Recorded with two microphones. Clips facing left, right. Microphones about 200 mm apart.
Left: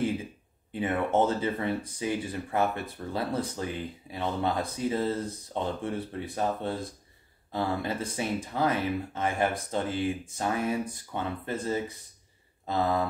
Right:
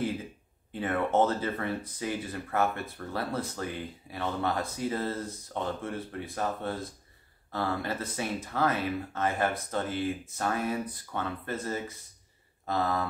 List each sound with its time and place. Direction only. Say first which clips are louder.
0.7 s speech: even; 15° left (ahead or behind)